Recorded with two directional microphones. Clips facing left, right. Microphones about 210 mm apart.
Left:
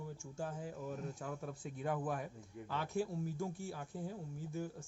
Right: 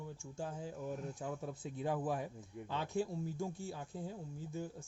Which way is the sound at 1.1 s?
20° right (ahead or behind).